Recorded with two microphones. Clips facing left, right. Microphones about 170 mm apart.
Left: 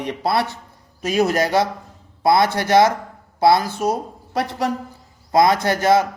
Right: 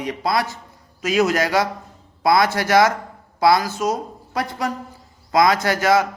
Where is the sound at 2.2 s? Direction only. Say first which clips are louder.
Left 1 dB; 25° left (ahead or behind).